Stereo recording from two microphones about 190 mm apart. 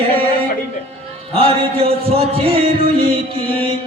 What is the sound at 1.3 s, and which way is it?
Music, 30° right (ahead or behind).